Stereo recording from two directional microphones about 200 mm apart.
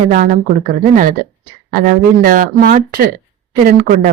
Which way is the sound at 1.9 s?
45° right (ahead or behind).